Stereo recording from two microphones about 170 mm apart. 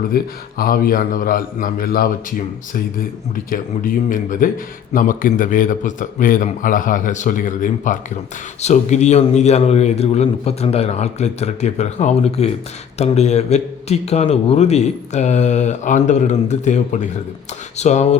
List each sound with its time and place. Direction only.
0.6 s a man's voice: 60° left (ahead or behind); by 18.2 s 40° left (ahead or behind)